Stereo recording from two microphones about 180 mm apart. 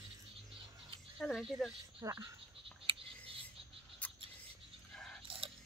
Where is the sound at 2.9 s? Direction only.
30° right (ahead or behind).